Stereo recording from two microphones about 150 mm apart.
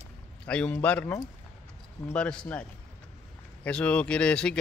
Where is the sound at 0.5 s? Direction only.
10° left (ahead or behind).